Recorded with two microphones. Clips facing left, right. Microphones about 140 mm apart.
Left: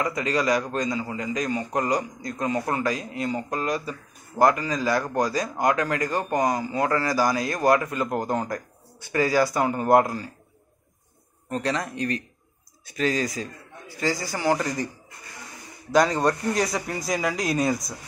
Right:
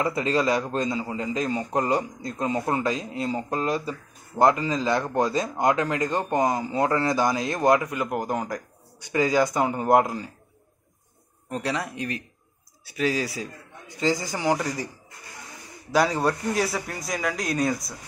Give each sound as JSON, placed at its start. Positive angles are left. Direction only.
{"t": 0.0, "sound": "speech", "side_deg": -30}
{"t": 11.5, "sound": "a man's voice", "side_deg": -10}
{"t": 15.9, "sound": "a man's voice", "side_deg": -10}